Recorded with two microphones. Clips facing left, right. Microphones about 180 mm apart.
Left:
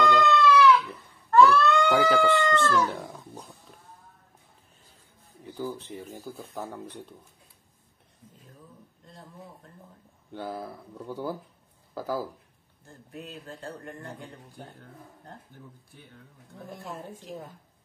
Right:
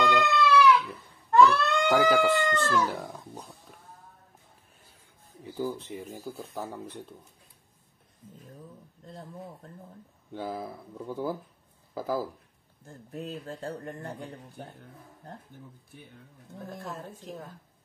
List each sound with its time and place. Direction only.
0.0 s cat: 10° right (ahead or behind)
1.3 s a sound: 20° right (ahead or behind)
2.0 s a sound: centre (ahead or behind)
2.7 s speech: centre (ahead or behind)
5.6 s speech: 10° right (ahead or behind)
10.3 s speech: 5° right (ahead or behind)
13.1 s speech: 40° right (ahead or behind)